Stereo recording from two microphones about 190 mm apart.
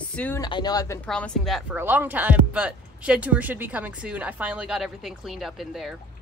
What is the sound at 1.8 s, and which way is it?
Speech, 10° right (ahead or behind).